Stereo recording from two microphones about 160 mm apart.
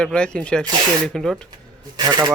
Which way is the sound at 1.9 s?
25° right (ahead or behind).